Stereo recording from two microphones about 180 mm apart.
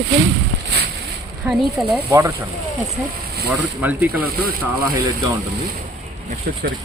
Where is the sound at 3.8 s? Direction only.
10° right (ahead or behind).